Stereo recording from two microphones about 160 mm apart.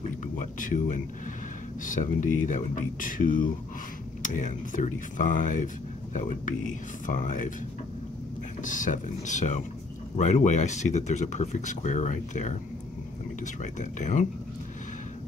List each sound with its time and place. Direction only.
0.4 s speech: 55° left (ahead or behind)
8.6 s speech: 55° left (ahead or behind)